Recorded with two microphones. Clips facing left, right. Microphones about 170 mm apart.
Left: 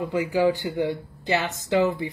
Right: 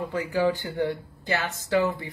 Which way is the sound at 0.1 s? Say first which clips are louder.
Left 3 dB; 15° left (ahead or behind).